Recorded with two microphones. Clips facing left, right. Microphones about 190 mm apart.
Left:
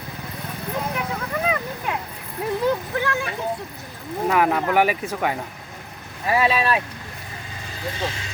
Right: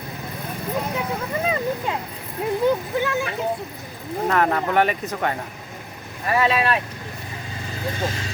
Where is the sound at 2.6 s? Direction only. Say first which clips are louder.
Right 2 dB; 20° right (ahead or behind).